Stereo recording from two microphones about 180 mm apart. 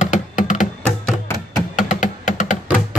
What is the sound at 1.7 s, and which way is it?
Typing, 45° left (ahead or behind).